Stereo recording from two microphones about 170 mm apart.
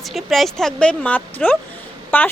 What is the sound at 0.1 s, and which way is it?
Speech, centre (ahead or behind).